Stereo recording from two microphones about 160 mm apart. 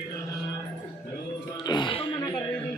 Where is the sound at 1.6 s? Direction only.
30° left (ahead or behind).